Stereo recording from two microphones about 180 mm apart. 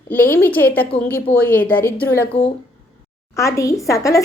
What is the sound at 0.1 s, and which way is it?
A woman's voice, 10° left (ahead or behind).